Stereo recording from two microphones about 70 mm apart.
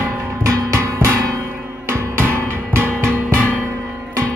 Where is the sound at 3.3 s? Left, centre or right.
Left.